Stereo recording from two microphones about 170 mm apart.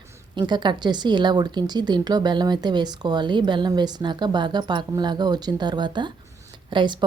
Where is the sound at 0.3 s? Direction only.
25° right (ahead or behind).